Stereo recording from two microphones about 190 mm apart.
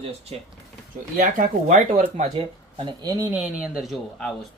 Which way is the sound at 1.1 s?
45° right (ahead or behind).